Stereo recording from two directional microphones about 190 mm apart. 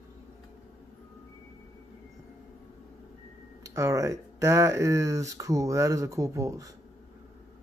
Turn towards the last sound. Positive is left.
turn(degrees=-15)  # may be behind; listen again after turning